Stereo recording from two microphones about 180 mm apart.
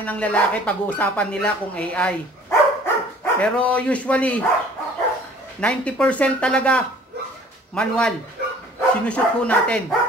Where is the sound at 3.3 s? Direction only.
5° left (ahead or behind).